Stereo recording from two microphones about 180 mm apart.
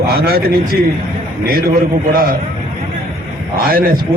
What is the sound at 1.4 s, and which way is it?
Speech, 55° right (ahead or behind).